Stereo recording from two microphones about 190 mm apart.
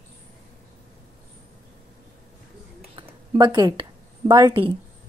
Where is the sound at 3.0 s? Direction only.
20° right (ahead or behind).